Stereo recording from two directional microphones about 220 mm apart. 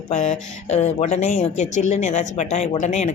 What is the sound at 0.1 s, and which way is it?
A woman's voice, 30° left (ahead or behind).